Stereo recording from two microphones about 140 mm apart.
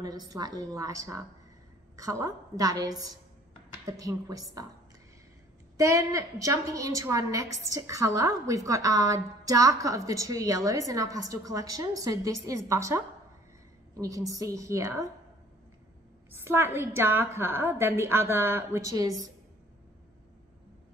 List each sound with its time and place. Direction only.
0.0 s a woman's voice: 30° right (ahead or behind)
5.8 s a woman's voice: 25° right (ahead or behind)
16.3 s a woman's voice: 15° right (ahead or behind)